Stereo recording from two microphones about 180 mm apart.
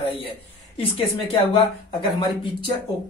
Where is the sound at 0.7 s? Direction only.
30° left (ahead or behind).